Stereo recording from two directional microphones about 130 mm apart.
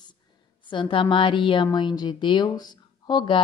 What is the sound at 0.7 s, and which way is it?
A woman's voice, 40° left (ahead or behind).